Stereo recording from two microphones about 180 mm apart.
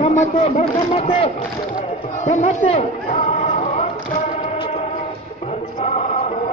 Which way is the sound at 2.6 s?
40° left (ahead or behind).